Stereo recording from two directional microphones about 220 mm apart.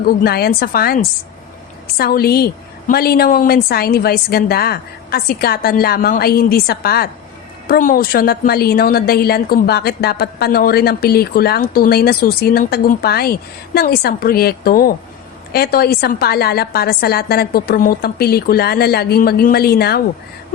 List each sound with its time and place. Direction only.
0.0 s a woman's voice: 45° left (ahead or behind)